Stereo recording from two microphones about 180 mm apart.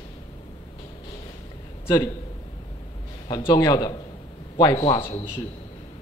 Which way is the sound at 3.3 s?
25° left (ahead or behind).